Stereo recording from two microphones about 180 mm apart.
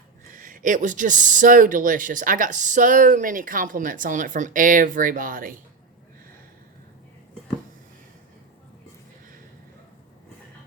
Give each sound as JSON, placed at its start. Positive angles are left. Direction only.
{"t": 0.3, "sound": "speech", "side_deg": -50}